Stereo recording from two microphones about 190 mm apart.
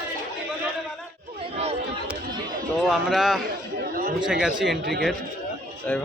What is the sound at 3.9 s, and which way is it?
Chatter, 50° right (ahead or behind).